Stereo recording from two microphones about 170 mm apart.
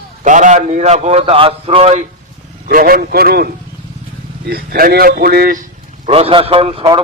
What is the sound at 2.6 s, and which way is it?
Speech, 60° right (ahead or behind).